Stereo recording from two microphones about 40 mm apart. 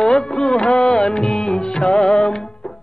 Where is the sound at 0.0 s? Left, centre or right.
Left.